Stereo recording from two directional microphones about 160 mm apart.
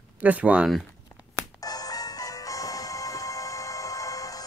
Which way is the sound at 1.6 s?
25° left (ahead or behind).